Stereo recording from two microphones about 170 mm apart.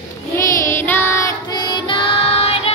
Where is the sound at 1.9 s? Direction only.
35° left (ahead or behind).